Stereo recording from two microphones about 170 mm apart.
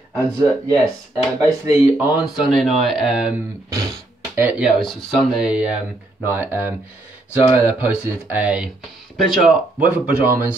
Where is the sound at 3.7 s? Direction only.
20° right (ahead or behind).